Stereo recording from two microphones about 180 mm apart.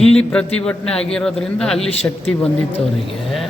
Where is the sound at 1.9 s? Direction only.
35° left (ahead or behind).